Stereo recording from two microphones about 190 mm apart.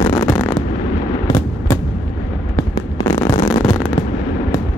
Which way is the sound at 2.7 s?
20° left (ahead or behind).